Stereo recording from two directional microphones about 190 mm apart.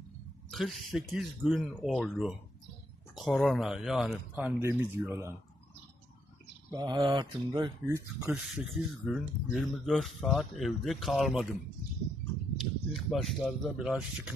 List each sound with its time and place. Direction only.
0.5 s speech: centre (ahead or behind); by 5.3 s 15° right (ahead or behind)
6.7 s speech: 20° right (ahead or behind); by 11.4 s centre (ahead or behind)
12.9 s speech: centre (ahead or behind)